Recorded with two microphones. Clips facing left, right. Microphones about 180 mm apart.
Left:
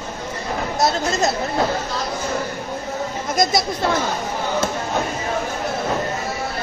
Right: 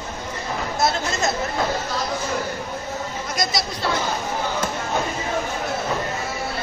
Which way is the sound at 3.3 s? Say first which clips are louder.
Left 7 dB; 50° left (ahead or behind).